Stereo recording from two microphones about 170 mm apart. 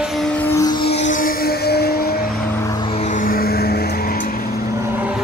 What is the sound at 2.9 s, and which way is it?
Vehicle, 45° left (ahead or behind).